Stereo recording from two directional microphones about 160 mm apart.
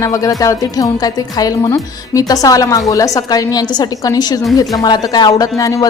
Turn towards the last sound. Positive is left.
turn(degrees=20)  # may be behind; listen again after turning